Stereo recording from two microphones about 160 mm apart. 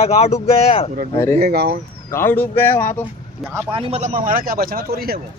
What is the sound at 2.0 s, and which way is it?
Speech, 15° left (ahead or behind).